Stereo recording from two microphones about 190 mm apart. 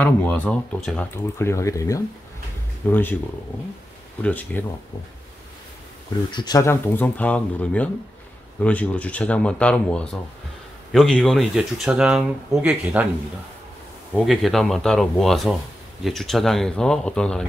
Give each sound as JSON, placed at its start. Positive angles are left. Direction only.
{"t": 0.0, "sound": "speech", "side_deg": 10}
{"t": 4.2, "sound": "speech", "side_deg": 10}
{"t": 6.3, "sound": "speech", "side_deg": 20}
{"t": 14.1, "sound": "speech", "side_deg": 0}